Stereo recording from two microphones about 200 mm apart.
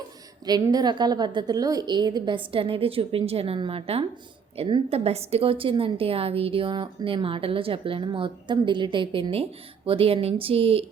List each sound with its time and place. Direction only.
0.4 s a woman's voice: 20° right (ahead or behind)